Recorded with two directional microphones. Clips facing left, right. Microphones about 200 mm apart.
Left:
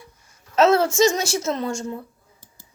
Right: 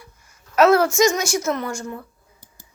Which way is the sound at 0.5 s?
25° left (ahead or behind).